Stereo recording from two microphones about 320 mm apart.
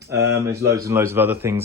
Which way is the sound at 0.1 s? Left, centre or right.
Centre.